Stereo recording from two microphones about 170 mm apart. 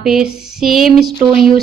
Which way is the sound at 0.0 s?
5° right (ahead or behind).